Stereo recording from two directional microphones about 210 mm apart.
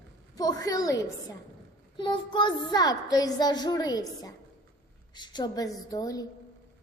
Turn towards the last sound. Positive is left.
turn(degrees=15)  # may be behind; listen again after turning